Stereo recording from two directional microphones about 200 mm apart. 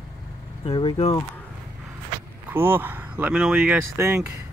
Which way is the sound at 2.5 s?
10° right (ahead or behind).